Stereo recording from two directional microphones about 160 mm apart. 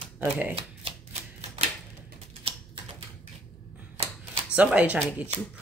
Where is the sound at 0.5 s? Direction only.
35° right (ahead or behind).